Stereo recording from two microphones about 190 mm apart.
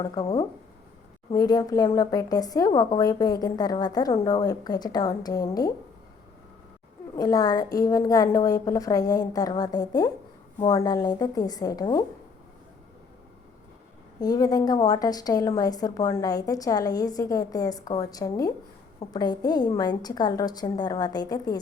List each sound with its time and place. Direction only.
0.0 s a woman's voice: 25° left (ahead or behind)
7.2 s a woman's voice: 20° left (ahead or behind)
14.2 s a woman's voice: 20° left (ahead or behind)